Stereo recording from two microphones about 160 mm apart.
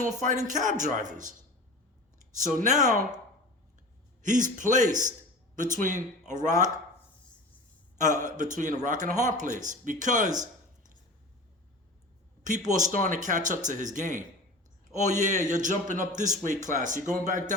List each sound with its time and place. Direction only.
0.0 s a man's voice: 50° right (ahead or behind)
2.4 s a man's voice: 50° right (ahead or behind)
4.2 s a man's voice: 55° right (ahead or behind)
7.9 s a man's voice: 50° right (ahead or behind)
12.4 s a man's voice: 50° right (ahead or behind)